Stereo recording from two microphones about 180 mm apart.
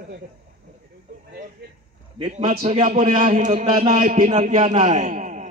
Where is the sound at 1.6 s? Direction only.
65° right (ahead or behind).